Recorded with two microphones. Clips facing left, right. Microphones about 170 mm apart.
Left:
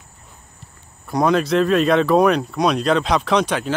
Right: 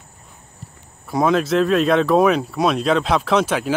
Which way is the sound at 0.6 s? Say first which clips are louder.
Right 8 dB; 40° right (ahead or behind).